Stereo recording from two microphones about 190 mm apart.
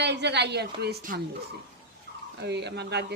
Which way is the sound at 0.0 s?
65° right (ahead or behind).